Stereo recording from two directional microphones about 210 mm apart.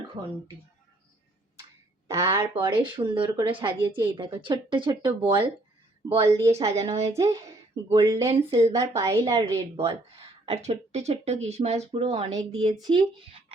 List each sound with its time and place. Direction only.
0.2 s speech: 25° right (ahead or behind)
2.0 s speech: 15° right (ahead or behind)
2.6 s speech: 25° right (ahead or behind)
6.7 s speech: 30° right (ahead or behind)
7.0 s speech: 15° right (ahead or behind)
10.4 s speech: 30° right (ahead or behind)
12.7 s speech: 20° right (ahead or behind)